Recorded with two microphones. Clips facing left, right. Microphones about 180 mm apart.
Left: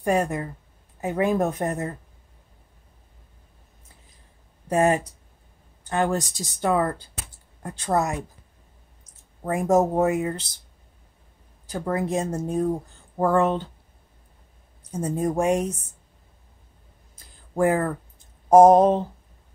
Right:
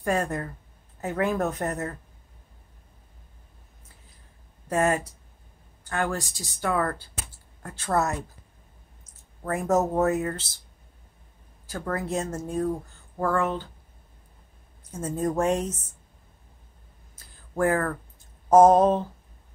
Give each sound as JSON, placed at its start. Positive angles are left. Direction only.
{"t": 0.0, "sound": "speech", "side_deg": 15}
{"t": 4.6, "sound": "speech", "side_deg": 15}
{"t": 9.5, "sound": "speech", "side_deg": 15}
{"t": 11.6, "sound": "speech", "side_deg": 20}
{"t": 14.9, "sound": "speech", "side_deg": 15}
{"t": 17.1, "sound": "a sound", "side_deg": 15}
{"t": 18.5, "sound": "speech", "side_deg": 15}